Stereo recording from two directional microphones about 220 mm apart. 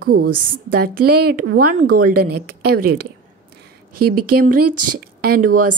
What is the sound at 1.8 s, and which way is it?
Speech, 40° right (ahead or behind).